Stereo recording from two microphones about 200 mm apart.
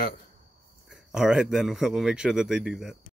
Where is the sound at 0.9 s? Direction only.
5° right (ahead or behind).